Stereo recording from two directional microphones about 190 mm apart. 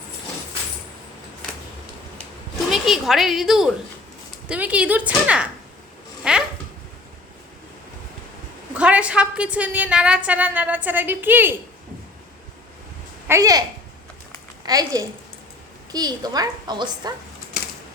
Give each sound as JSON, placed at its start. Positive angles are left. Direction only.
{"t": 2.6, "sound": "a woman's voice", "side_deg": 0}
{"t": 6.3, "sound": "a sound", "side_deg": -5}
{"t": 8.8, "sound": "a woman's voice", "side_deg": -5}
{"t": 13.2, "sound": "a woman's voice", "side_deg": -15}